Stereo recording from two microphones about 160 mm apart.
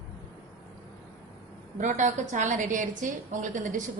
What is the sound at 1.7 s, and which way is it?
A woman's voice, 55° right (ahead or behind).